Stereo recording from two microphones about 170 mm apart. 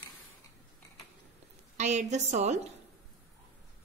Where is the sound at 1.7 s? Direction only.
45° right (ahead or behind).